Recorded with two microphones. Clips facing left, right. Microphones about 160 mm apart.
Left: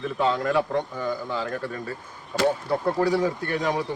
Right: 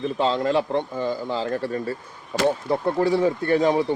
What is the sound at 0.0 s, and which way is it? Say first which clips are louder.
A man's voice: right 2 dB; 25° right (ahead or behind).